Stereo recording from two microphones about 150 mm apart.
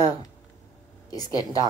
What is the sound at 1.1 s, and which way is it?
Speech, 25° left (ahead or behind).